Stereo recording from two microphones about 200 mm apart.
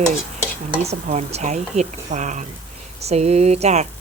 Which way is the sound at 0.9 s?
35° right (ahead or behind).